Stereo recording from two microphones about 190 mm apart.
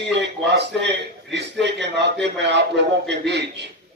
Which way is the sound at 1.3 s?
65° right (ahead or behind).